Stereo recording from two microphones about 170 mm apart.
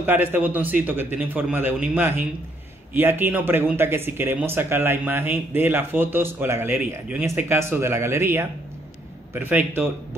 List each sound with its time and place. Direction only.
0.0 s speech: 10° right (ahead or behind)